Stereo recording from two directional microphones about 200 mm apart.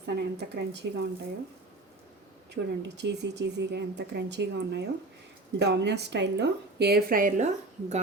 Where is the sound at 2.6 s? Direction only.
55° right (ahead or behind).